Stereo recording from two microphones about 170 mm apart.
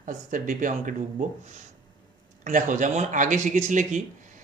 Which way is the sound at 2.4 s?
50° right (ahead or behind).